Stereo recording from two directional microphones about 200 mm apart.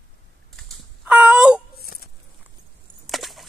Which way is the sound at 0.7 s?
5° right (ahead or behind).